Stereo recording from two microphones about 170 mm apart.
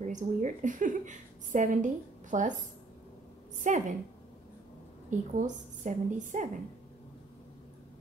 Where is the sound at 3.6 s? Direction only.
45° right (ahead or behind).